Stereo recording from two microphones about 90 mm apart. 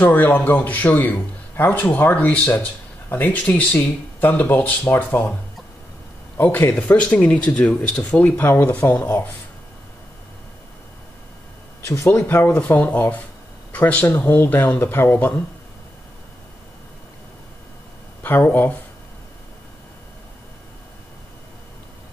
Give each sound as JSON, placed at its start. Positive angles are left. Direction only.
{"t": 0.0, "sound": "a man's voice", "side_deg": 20}
{"t": 6.3, "sound": "a man's voice", "side_deg": 20}
{"t": 11.8, "sound": "a man's voice", "side_deg": 30}
{"t": 18.2, "sound": "a man's voice", "side_deg": 20}